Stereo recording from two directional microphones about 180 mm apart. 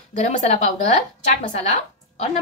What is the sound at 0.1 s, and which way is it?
A woman's voice, 40° left (ahead or behind).